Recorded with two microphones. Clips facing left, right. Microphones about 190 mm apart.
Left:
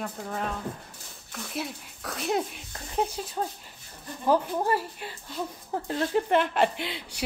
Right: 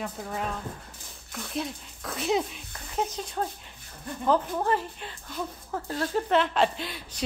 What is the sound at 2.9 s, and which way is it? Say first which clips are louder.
Speech: left 1 dB; 10° left (ahead or behind).